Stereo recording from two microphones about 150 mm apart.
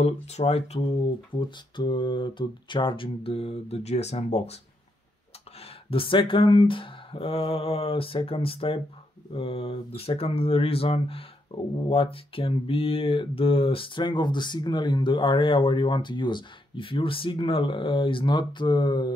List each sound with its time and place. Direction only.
0.0 s speech: 45° left (ahead or behind)
5.6 s speech: 35° left (ahead or behind)